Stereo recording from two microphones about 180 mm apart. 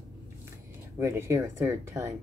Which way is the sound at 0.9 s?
15° right (ahead or behind).